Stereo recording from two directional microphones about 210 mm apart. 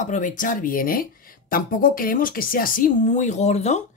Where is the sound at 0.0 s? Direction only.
35° left (ahead or behind).